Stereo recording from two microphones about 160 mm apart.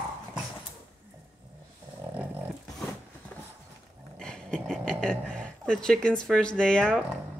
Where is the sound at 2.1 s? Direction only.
10° right (ahead or behind).